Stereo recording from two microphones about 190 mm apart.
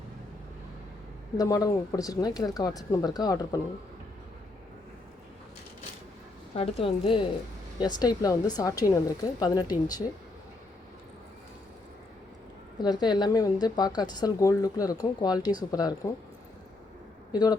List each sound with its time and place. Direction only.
1.4 s a woman's voice: 20° left (ahead or behind)
6.5 s a woman's voice: 30° left (ahead or behind)
12.8 s a woman's voice: 20° left (ahead or behind)
17.3 s a woman's voice: 20° left (ahead or behind)